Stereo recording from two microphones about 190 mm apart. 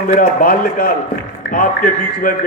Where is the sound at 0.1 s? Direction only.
45° left (ahead or behind).